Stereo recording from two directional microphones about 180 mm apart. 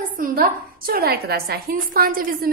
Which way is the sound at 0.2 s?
55° right (ahead or behind).